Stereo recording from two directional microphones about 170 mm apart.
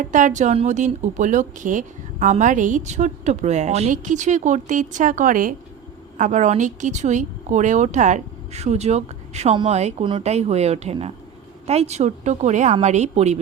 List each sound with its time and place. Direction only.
0.0 s a woman's voice: 50° right (ahead or behind)